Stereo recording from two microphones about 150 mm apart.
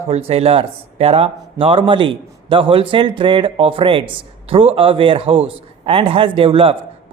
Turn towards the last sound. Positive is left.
turn(degrees=-35)  # may be behind; listen again after turning